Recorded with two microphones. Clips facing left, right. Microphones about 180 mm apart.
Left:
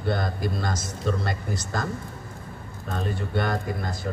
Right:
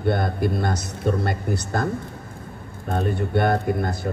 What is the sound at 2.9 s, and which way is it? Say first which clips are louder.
Speech: right 6 dB; 60° right (ahead or behind).